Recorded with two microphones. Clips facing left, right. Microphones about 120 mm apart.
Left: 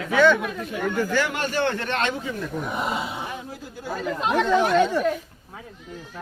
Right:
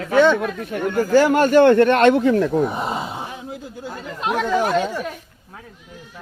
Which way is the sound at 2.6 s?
30° right (ahead or behind).